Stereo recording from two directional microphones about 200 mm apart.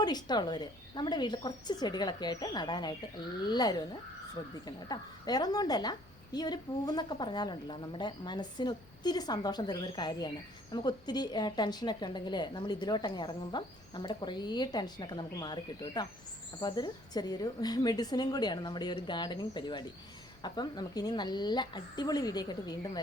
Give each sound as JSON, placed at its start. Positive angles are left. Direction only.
{"t": 0.0, "sound": "a woman's voice", "side_deg": 20}